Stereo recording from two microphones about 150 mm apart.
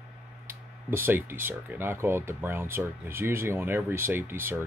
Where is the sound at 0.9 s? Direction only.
15° right (ahead or behind).